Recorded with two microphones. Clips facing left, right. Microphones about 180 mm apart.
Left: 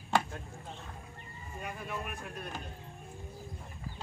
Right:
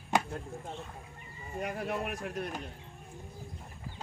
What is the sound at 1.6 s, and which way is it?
Speech, 75° right (ahead or behind).